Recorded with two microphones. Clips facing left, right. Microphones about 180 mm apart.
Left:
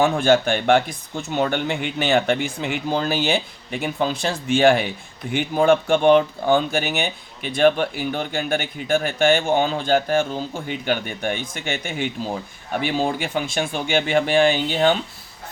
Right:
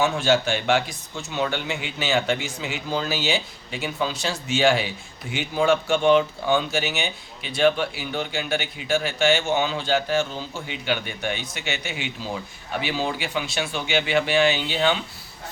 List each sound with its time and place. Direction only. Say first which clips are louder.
0.0 s speech: left 4 dB; 55° left (ahead or behind)